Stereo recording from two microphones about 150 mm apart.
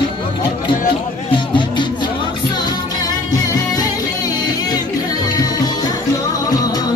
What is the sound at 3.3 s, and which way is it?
Music, 25° left (ahead or behind).